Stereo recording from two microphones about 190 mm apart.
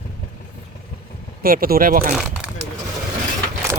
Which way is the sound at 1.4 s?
50° right (ahead or behind).